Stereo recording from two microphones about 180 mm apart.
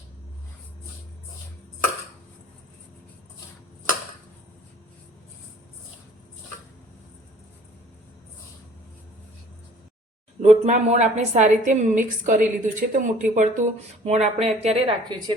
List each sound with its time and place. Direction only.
10.4 s a woman's voice: 40° right (ahead or behind)